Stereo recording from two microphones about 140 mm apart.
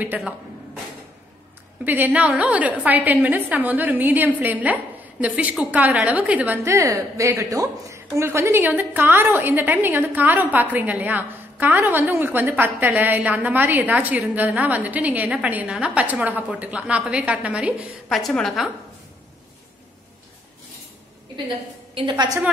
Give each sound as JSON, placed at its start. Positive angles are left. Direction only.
{"t": 0.0, "sound": "a woman's voice", "side_deg": -10}
{"t": 1.9, "sound": "a woman's voice", "side_deg": -15}
{"t": 18.0, "sound": "a woman's voice", "side_deg": 5}
{"t": 21.9, "sound": "a woman's voice", "side_deg": -35}